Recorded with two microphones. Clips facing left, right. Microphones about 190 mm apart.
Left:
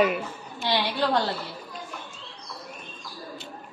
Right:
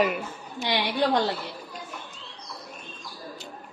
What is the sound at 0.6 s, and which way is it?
Speech, 15° right (ahead or behind).